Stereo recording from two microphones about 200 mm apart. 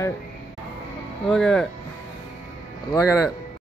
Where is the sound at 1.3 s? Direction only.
Centre (ahead or behind).